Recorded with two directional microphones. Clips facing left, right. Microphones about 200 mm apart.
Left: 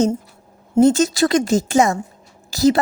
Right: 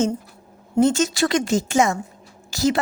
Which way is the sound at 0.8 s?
35° left (ahead or behind).